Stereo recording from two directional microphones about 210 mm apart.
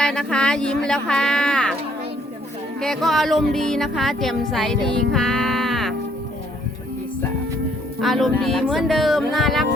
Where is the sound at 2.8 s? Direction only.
Centre (ahead or behind).